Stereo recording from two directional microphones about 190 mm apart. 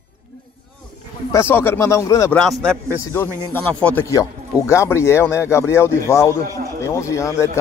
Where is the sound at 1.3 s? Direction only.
10° left (ahead or behind).